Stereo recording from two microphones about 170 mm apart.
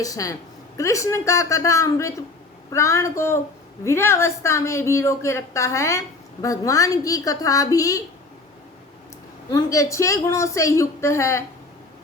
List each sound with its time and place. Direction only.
0.0 s a woman's voice: 20° left (ahead or behind)
9.5 s a woman's voice: 20° left (ahead or behind)